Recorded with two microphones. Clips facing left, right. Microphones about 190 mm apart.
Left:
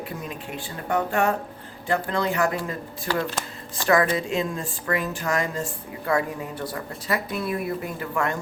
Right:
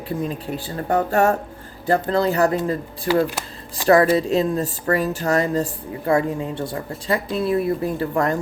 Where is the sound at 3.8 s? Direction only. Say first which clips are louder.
Right 6 dB; 35° right (ahead or behind).